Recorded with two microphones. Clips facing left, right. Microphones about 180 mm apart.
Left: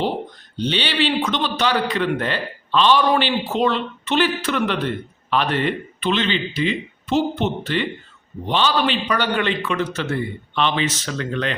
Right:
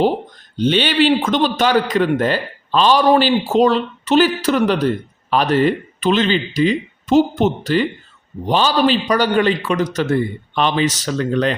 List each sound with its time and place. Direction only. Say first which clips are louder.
0.5 s a man's voice: right 7 dB; 50° right (ahead or behind)